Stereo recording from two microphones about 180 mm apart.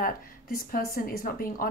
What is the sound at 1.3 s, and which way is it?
Speech, 55° left (ahead or behind).